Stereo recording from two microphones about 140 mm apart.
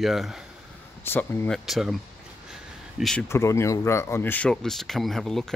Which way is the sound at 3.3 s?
20° left (ahead or behind).